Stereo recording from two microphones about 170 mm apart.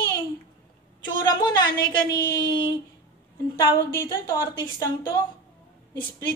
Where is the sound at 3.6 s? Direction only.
20° left (ahead or behind).